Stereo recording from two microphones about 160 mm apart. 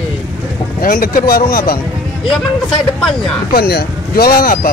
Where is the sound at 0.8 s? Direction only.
60° left (ahead or behind).